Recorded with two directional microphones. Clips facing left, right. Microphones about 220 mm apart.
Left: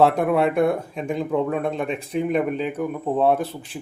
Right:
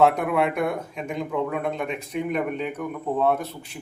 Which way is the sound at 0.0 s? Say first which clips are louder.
Left 2 dB; 30° left (ahead or behind).